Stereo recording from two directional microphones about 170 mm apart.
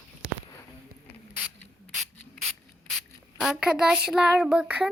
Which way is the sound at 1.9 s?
Centre (ahead or behind).